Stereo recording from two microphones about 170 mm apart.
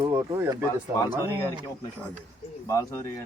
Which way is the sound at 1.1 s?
15° right (ahead or behind).